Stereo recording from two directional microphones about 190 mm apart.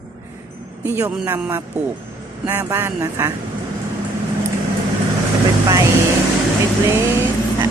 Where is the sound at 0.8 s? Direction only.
10° right (ahead or behind).